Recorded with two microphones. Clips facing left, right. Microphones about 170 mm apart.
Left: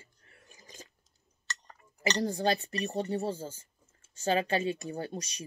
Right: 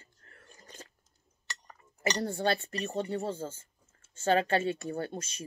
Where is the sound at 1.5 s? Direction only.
10° right (ahead or behind).